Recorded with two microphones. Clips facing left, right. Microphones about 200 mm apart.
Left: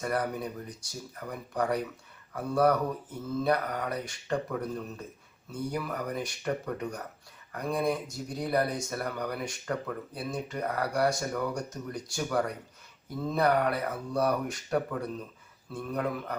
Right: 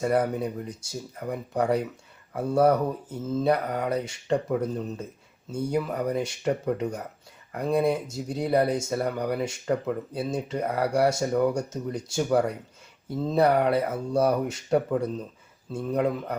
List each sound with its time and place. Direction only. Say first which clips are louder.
0.0 s speech: right 7 dB; 25° right (ahead or behind)